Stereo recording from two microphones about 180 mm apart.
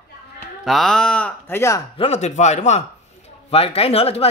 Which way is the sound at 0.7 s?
Centre (ahead or behind).